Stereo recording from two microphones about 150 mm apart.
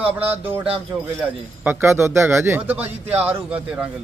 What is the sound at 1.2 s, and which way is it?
Speech, 10° right (ahead or behind).